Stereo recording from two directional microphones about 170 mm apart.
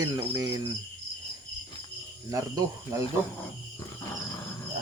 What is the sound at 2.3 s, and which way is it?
Cricket, 20° right (ahead or behind).